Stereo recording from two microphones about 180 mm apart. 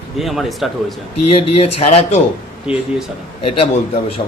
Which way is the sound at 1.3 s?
30° left (ahead or behind).